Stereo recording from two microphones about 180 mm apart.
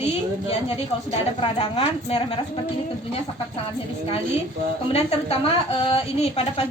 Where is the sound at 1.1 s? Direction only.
35° left (ahead or behind).